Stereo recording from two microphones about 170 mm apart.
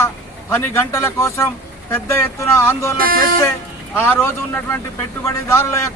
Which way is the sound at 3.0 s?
60° right (ahead or behind).